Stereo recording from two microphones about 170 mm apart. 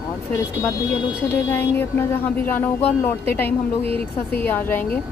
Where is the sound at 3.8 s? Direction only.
35° right (ahead or behind).